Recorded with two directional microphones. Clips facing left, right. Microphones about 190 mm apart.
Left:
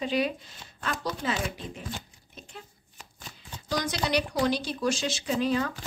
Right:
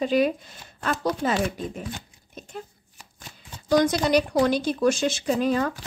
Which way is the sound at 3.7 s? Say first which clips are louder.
Right 8 dB; 50° right (ahead or behind).